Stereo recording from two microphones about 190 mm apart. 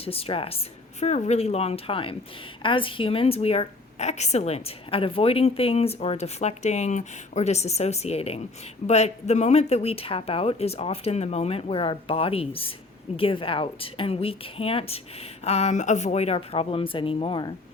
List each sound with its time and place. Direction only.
0.0 s a woman's voice: 30° left (ahead or behind)